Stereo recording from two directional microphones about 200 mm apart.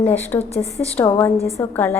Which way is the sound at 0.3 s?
20° left (ahead or behind).